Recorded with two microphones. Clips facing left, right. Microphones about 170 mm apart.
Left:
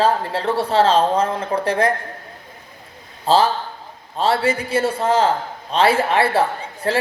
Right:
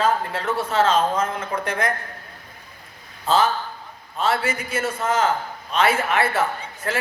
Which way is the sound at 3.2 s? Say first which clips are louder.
Left 3 dB; 30° left (ahead or behind).